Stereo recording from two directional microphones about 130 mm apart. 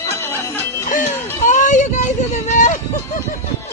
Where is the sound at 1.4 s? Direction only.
70° left (ahead or behind).